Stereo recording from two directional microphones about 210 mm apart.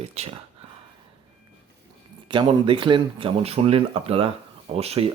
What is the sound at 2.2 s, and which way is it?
Speech, 25° right (ahead or behind).